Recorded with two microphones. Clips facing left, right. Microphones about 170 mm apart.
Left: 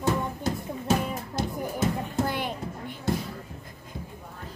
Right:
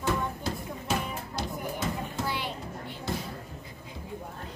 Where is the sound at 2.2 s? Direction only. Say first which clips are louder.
Left 4 dB; 50° left (ahead or behind).